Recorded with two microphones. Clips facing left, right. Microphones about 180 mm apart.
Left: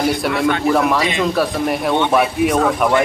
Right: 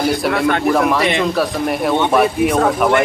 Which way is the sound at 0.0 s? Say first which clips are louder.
Right 1 dB; centre (ahead or behind).